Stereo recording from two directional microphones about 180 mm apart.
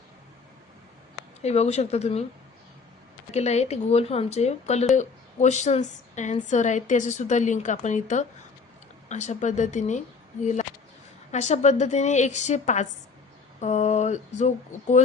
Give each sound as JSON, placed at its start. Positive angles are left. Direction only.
{"t": 1.4, "sound": "a woman's voice", "side_deg": 35}
{"t": 3.3, "sound": "a woman's voice", "side_deg": 40}